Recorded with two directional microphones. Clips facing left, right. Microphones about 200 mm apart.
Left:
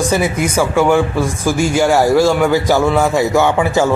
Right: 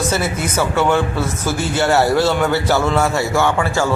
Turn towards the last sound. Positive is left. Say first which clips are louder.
# left 4 dB
turn(degrees=20)  # may be behind; listen again after turning